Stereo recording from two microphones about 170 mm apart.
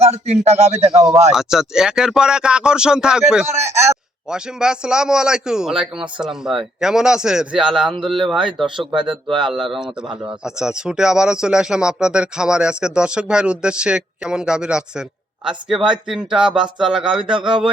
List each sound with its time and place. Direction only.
0.0 s a man's voice: 40° right (ahead or behind)
1.3 s speech: 5° right (ahead or behind)
4.3 s speech: 5° right (ahead or behind)
9.2 s speech: 25° right (ahead or behind)
9.5 s speech: centre (ahead or behind)